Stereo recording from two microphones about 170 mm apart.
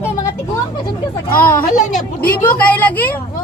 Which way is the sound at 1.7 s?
50° left (ahead or behind).